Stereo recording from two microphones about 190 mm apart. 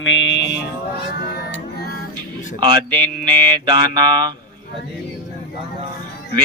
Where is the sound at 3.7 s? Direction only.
25° right (ahead or behind).